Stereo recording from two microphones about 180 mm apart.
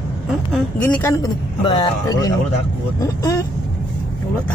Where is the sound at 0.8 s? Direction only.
15° left (ahead or behind).